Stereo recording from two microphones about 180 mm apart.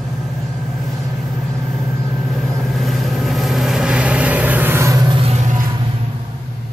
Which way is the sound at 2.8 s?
Centre (ahead or behind).